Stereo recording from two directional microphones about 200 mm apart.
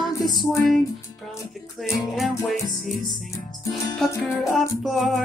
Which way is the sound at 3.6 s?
15° left (ahead or behind).